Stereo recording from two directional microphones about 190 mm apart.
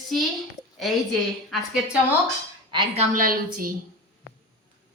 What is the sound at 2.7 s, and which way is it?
Speech, 35° right (ahead or behind).